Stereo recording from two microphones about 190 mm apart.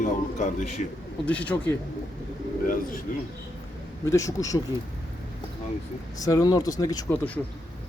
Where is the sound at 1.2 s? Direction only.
5° left (ahead or behind).